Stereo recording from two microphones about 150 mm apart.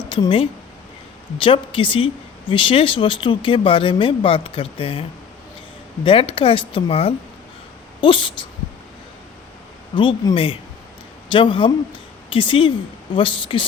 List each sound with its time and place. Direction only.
0.1 s a woman's voice: 35° left (ahead or behind)
6.1 s speech: 40° left (ahead or behind)
9.9 s speech: 35° left (ahead or behind)